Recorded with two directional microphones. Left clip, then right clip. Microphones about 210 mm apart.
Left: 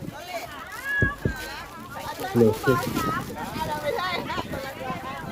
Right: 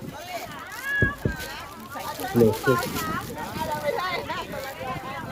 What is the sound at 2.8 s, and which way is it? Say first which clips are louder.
Speech: left 1 dB; 40° right (ahead or behind).